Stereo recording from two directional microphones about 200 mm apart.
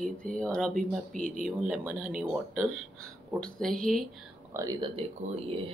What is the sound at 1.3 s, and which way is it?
Speech, 45° right (ahead or behind).